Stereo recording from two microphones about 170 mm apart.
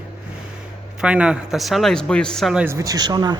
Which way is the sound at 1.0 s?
5° right (ahead or behind).